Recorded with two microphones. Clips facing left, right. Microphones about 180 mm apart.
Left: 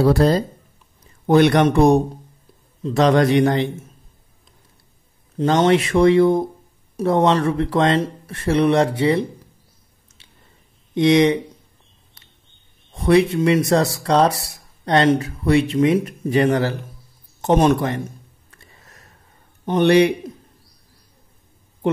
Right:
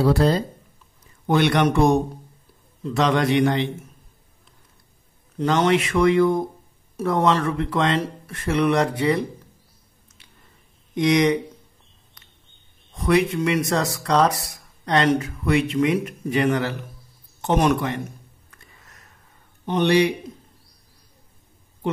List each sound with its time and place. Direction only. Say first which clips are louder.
0.0 s speech: left 3 dB; 45° left (ahead or behind)
5.4 s speech: left 3 dB; 30° left (ahead or behind)
10.2 s squish: left 1 dB; 25° left (ahead or behind)
11.0 s speech: left 4 dB; 30° left (ahead or behind)
12.9 s speech: left 4 dB; 30° left (ahead or behind)
18.5 s a sound: left 2 dB; 30° left (ahead or behind)
19.6 s a man's voice: left 4 dB; 50° left (ahead or behind)